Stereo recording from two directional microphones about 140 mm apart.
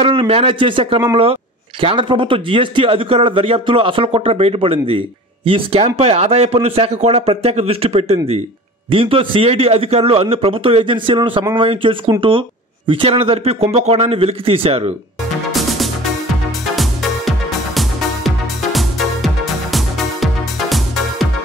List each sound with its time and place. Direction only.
0.0 s speech: 40° right (ahead or behind)
17.7 s music: centre (ahead or behind)